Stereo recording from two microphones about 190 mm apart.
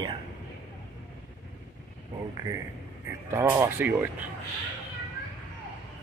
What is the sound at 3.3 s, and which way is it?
Speech, 15° right (ahead or behind).